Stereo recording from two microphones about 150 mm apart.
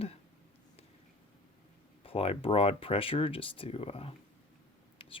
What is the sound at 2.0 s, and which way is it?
Speech, 40° left (ahead or behind).